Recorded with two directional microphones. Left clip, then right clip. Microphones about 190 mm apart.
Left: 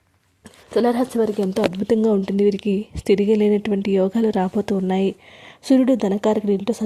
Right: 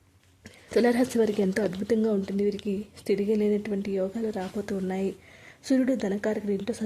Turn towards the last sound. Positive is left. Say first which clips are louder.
# left 9 dB
turn(degrees=30)  # may be behind; listen again after turning